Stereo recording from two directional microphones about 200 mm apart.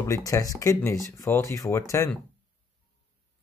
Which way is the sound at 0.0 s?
15° left (ahead or behind).